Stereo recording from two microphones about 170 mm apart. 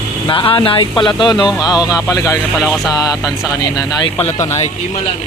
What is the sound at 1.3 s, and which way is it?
Speech, centre (ahead or behind).